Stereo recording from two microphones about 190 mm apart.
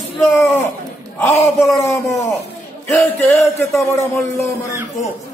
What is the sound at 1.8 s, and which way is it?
A man's voice, 15° left (ahead or behind).